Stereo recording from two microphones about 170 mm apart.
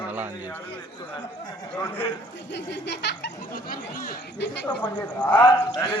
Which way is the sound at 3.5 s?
60° left (ahead or behind).